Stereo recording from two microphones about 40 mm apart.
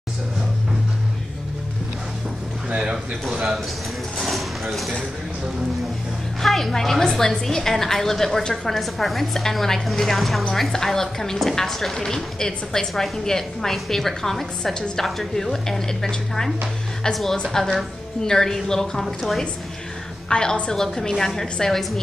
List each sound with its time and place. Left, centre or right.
2.8 s speech: centre
4.2 s a sound: centre
6.4 s a woman's voice: centre
15.0 s a woman's voice: centre
20.2 s a woman's voice: left